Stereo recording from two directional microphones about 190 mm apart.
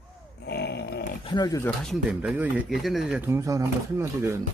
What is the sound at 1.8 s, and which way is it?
Speech, 5° right (ahead or behind).